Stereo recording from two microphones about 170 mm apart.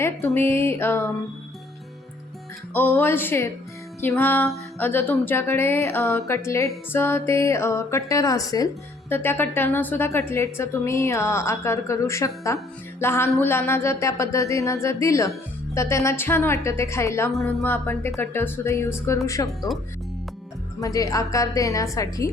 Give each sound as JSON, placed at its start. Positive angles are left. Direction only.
{"t": 0.3, "sound": "speech", "side_deg": 15}
{"t": 2.7, "sound": "speech", "side_deg": 10}
{"t": 20.8, "sound": "a woman's voice", "side_deg": 20}